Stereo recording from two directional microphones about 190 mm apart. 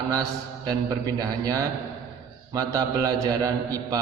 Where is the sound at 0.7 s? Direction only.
20° right (ahead or behind).